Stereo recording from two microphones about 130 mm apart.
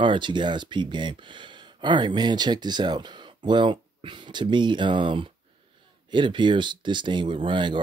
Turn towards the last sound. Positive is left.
turn(degrees=-40)  # may be behind; listen again after turning